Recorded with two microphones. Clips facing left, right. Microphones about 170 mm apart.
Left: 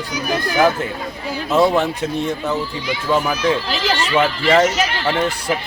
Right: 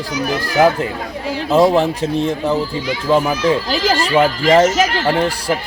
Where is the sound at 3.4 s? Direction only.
40° right (ahead or behind).